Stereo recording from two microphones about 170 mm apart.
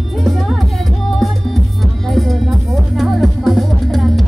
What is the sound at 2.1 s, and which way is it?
Music, centre (ahead or behind).